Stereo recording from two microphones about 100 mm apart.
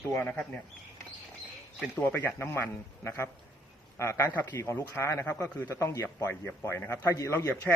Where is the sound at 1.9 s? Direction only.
20° left (ahead or behind).